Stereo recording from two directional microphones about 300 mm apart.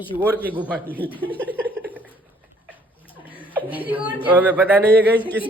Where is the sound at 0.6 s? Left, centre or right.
Centre.